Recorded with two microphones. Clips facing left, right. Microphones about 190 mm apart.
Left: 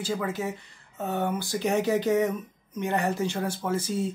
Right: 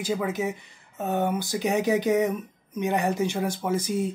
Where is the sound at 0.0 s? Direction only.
15° right (ahead or behind).